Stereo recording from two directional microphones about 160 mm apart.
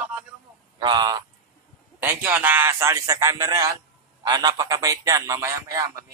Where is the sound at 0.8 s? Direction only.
25° right (ahead or behind).